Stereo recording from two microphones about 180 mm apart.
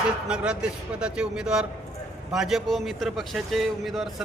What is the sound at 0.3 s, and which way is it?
Speech, 5° right (ahead or behind).